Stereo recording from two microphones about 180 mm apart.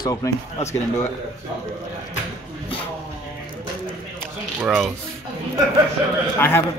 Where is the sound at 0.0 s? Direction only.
20° left (ahead or behind).